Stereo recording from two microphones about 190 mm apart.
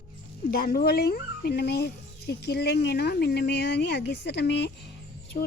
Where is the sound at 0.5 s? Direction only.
50° left (ahead or behind).